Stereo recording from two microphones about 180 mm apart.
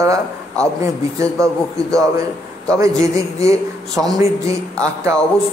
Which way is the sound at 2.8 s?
15° right (ahead or behind).